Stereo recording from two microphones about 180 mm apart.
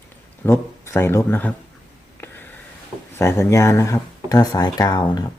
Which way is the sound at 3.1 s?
15° left (ahead or behind).